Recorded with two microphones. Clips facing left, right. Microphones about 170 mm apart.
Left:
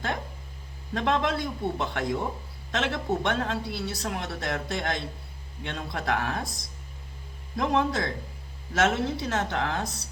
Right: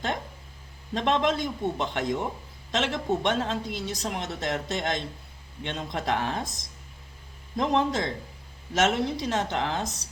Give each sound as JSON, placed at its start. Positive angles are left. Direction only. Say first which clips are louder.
{"t": 0.9, "sound": "speech", "louder": "right 1 dB", "side_deg": -20}
{"t": 7.5, "sound": "speech", "louder": "right 1 dB", "side_deg": -20}